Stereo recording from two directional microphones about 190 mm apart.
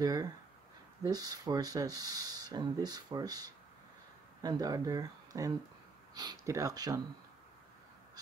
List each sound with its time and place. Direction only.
0.0 s speech: 20° right (ahead or behind)